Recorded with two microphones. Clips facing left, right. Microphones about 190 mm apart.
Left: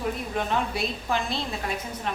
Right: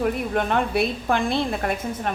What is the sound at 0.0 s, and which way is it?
A woman's voice, 60° right (ahead or behind).